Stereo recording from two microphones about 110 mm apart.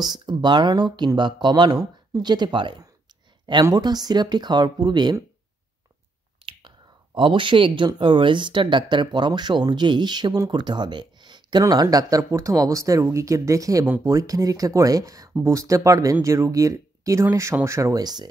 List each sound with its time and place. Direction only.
0.0 s speech: 40° right (ahead or behind)
6.4 s whispering: 50° right (ahead or behind)
7.2 s speech: 50° right (ahead or behind); by 18.0 s 25° right (ahead or behind)
18.0 s speech: 40° right (ahead or behind)